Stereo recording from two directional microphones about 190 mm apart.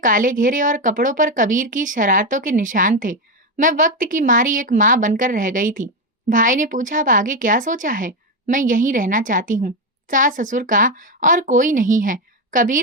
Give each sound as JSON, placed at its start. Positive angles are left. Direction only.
{"t": 0.0, "sound": "a woman's voice", "side_deg": -45}